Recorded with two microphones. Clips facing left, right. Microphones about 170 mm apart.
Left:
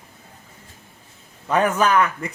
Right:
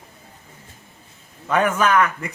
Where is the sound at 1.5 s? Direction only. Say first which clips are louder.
Even; 35° left (ahead or behind).